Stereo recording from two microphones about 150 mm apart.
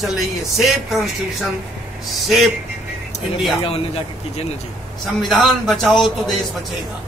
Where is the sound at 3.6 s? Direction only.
40° left (ahead or behind).